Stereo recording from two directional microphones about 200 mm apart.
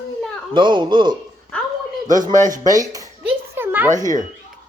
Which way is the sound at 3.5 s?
10° right (ahead or behind).